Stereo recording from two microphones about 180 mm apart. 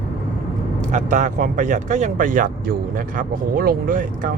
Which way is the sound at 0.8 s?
40° right (ahead or behind).